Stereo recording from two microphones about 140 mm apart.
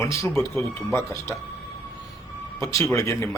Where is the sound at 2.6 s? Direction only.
20° left (ahead or behind).